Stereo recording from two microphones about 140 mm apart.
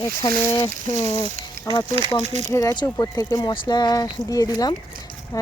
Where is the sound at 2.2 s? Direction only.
55° right (ahead or behind).